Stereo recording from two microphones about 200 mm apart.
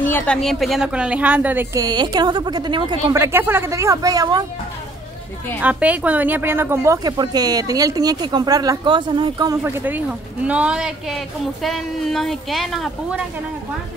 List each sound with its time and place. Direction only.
0.0 s a woman's voice: 10° left (ahead or behind); by 4.5 s 20° right (ahead or behind)
5.6 s a woman's voice: 5° right (ahead or behind); by 9.6 s 20° right (ahead or behind)
9.6 s speech: 10° right (ahead or behind)